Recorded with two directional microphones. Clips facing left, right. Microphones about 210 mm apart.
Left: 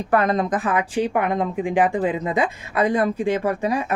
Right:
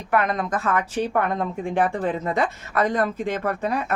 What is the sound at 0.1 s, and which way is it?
Speech, 30° left (ahead or behind).